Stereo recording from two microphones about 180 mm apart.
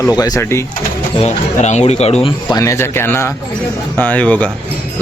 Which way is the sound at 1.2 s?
40° left (ahead or behind).